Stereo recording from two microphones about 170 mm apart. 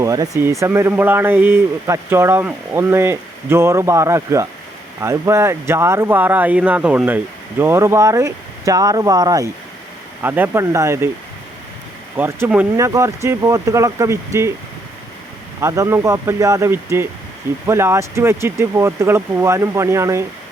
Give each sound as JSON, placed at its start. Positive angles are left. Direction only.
{"t": 0.0, "sound": "speech", "side_deg": -20}
{"t": 12.1, "sound": "speech", "side_deg": -10}
{"t": 15.6, "sound": "speech", "side_deg": -20}